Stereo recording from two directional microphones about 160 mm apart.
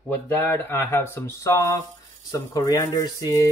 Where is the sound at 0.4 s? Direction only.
10° left (ahead or behind).